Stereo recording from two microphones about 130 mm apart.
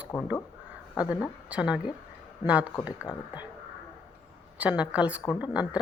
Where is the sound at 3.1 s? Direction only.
35° left (ahead or behind).